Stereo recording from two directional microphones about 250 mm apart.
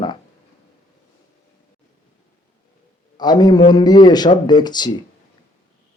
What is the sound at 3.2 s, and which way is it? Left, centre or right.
A man's voice, centre.